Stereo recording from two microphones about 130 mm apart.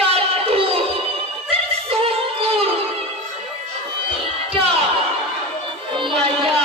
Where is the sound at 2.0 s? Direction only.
50° right (ahead or behind).